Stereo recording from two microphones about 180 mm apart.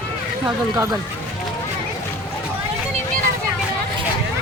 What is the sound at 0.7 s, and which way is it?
Speech, 15° right (ahead or behind).